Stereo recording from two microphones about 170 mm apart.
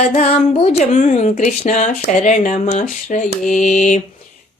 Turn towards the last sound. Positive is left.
turn(degrees=45)  # may be behind; listen again after turning